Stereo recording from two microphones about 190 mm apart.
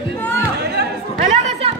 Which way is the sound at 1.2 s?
40° right (ahead or behind).